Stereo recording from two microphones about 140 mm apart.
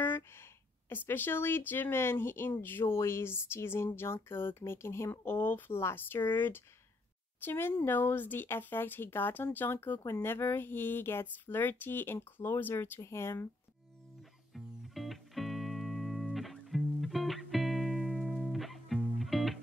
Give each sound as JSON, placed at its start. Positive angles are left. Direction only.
{"t": 0.8, "sound": "speech", "side_deg": 15}
{"t": 14.5, "sound": "music", "side_deg": 0}